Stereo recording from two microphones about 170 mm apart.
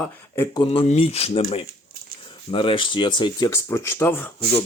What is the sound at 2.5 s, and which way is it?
Speech, 30° left (ahead or behind).